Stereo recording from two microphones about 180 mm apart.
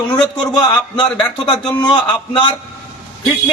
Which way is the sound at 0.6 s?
25° left (ahead or behind).